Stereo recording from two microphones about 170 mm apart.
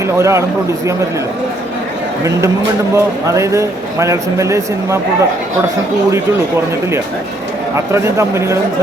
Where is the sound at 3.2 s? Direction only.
20° right (ahead or behind).